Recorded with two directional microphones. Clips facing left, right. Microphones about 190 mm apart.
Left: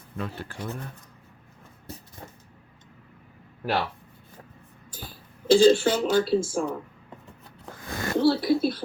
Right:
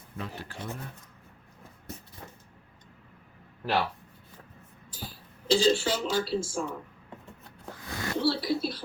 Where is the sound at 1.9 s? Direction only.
30° left (ahead or behind).